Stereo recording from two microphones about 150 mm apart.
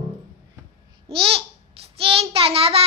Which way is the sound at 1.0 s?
40° right (ahead or behind).